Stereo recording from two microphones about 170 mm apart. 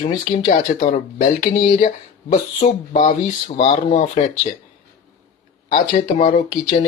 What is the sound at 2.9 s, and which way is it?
Speech, 45° left (ahead or behind).